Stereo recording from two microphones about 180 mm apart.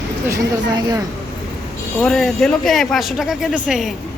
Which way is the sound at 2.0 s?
Centre (ahead or behind).